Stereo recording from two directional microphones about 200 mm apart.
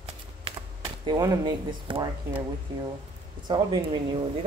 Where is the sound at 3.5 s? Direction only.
25° right (ahead or behind).